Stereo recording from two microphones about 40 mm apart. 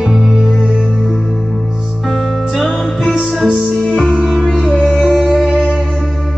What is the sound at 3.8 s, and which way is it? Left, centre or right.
Music, centre.